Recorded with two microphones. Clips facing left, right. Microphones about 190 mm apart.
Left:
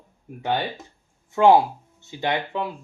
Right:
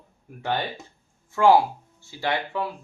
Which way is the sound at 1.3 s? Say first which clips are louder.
Left 2 dB; 20° left (ahead or behind).